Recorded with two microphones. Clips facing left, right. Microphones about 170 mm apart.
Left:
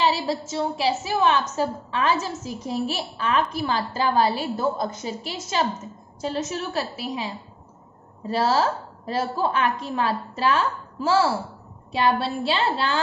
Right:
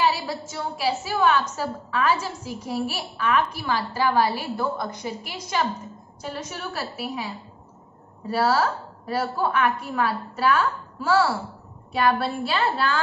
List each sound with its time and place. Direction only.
0.0 s a sound: 25° left (ahead or behind)
0.5 s a woman's voice: 25° left (ahead or behind)
8.5 s a woman's voice: 25° left (ahead or behind)